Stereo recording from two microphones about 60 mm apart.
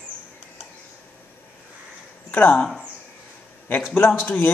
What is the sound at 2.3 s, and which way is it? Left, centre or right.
Speech, left.